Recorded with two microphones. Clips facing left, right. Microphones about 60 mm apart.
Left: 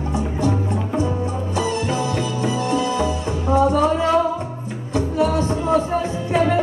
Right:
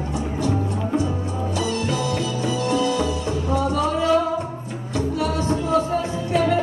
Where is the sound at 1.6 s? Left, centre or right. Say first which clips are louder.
Left 3 dB; left.